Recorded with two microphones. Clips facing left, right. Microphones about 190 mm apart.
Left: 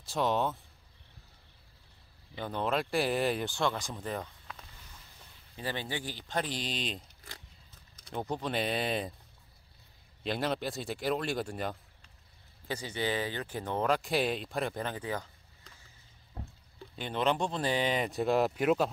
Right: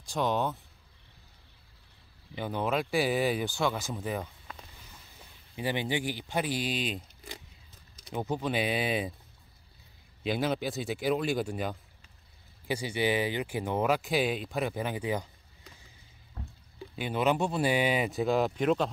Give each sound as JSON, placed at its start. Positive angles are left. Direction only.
{"t": 0.0, "sound": "speech", "side_deg": 0}
{"t": 2.3, "sound": "speech", "side_deg": -5}
{"t": 5.6, "sound": "speech", "side_deg": -15}
{"t": 10.2, "sound": "speech", "side_deg": 0}
{"t": 16.4, "sound": "a sound", "side_deg": 25}
{"t": 16.9, "sound": "speech", "side_deg": -5}